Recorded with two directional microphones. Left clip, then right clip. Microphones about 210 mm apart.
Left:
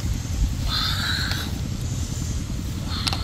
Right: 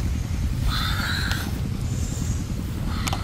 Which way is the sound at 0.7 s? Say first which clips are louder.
Left 2 dB; 20° right (ahead or behind).